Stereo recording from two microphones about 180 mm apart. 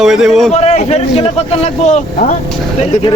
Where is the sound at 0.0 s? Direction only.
Centre (ahead or behind).